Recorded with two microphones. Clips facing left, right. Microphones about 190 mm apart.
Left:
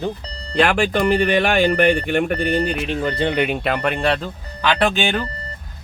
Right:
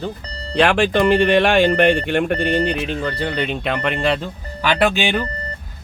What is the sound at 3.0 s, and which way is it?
Speech, 20° left (ahead or behind).